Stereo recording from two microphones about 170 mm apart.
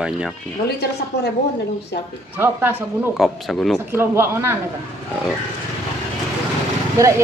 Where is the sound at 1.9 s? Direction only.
80° left.